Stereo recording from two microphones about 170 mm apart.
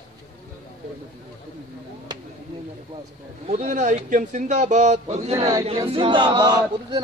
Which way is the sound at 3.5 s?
45° right (ahead or behind).